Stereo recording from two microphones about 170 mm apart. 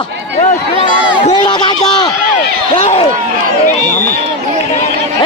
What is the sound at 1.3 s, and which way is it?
Speech, 25° left (ahead or behind).